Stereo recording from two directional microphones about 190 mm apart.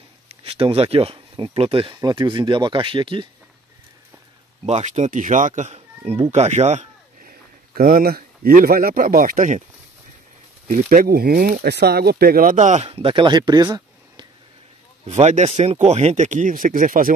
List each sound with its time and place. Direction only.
0.3 s speech: 30° right (ahead or behind)
4.6 s speech: 35° right (ahead or behind)
10.7 s speech: 45° right (ahead or behind)
12.8 s speech: 25° right (ahead or behind)
15.0 s speech: 35° right (ahead or behind)